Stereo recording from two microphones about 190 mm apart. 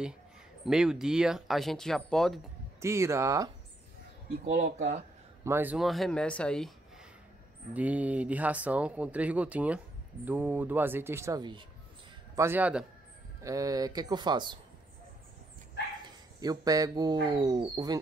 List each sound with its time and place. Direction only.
0.7 s speech: 5° right (ahead or behind)
2.8 s speech: 15° right (ahead or behind)
4.6 s speech: 40° right (ahead or behind)
5.4 s speech: 10° right (ahead or behind)
7.7 s speech: 5° right (ahead or behind)
12.4 s speech: 10° right (ahead or behind)
16.3 s speech: 20° right (ahead or behind)